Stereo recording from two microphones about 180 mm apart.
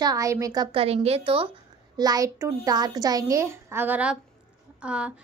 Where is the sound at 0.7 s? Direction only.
35° right (ahead or behind).